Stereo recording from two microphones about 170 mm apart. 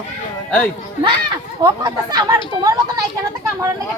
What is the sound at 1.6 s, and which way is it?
Speech, 25° right (ahead or behind).